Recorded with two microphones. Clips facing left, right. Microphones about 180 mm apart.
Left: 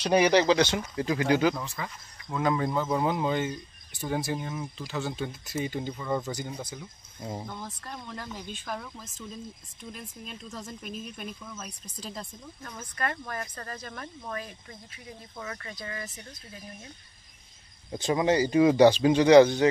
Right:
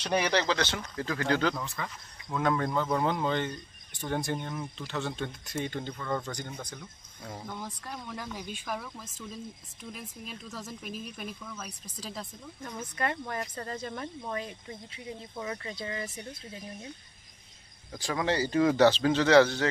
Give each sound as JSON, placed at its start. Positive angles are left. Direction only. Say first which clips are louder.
{"t": 0.0, "sound": "speech", "louder": "left 6 dB", "side_deg": 10}
{"t": 7.2, "sound": "speech", "louder": "left 6 dB", "side_deg": 20}
{"t": 7.5, "sound": "speech", "louder": "even", "side_deg": -10}
{"t": 9.9, "sound": "speech", "louder": "even", "side_deg": -5}
{"t": 12.6, "sound": "speech", "louder": "right 1 dB", "side_deg": -20}
{"t": 17.9, "sound": "speech", "louder": "left 5 dB", "side_deg": 20}